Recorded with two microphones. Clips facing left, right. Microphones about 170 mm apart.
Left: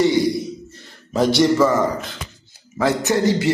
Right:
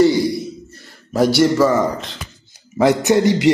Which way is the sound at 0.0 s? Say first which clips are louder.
Right 3 dB; 20° left (ahead or behind).